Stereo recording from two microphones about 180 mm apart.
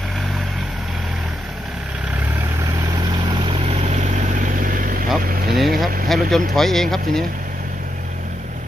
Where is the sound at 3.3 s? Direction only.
30° right (ahead or behind); by 5.0 s 50° right (ahead or behind).